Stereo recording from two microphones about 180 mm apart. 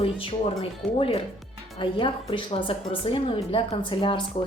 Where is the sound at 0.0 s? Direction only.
30° left (ahead or behind).